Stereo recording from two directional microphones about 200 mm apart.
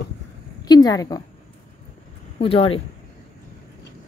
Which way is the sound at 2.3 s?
30° left (ahead or behind).